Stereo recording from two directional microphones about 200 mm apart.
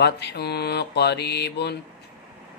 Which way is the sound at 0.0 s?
55° left (ahead or behind).